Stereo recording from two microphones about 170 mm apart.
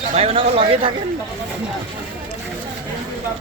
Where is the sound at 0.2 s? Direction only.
35° right (ahead or behind).